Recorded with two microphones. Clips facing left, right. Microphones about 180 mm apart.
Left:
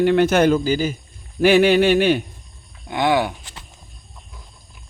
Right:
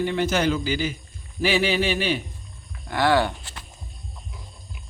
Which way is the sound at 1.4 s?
55° left (ahead or behind).